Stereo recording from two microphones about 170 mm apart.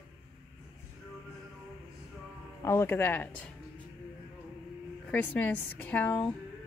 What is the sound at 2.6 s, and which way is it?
Speech, 15° left (ahead or behind).